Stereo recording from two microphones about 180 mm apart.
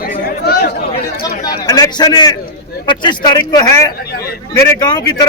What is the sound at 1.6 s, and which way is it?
A man's voice, 20° left (ahead or behind).